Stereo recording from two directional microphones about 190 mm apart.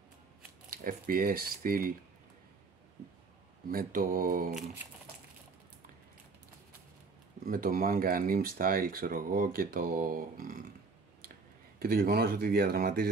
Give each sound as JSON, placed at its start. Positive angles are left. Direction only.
{"t": 0.7, "sound": "speech", "side_deg": -50}
{"t": 3.6, "sound": "speech", "side_deg": -50}
{"t": 7.4, "sound": "speech", "side_deg": -50}
{"t": 11.8, "sound": "speech", "side_deg": -50}